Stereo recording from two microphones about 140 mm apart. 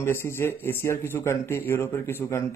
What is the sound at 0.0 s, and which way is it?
Speech, 15° left (ahead or behind).